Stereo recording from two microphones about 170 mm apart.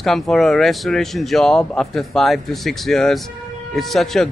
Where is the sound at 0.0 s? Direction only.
Centre (ahead or behind).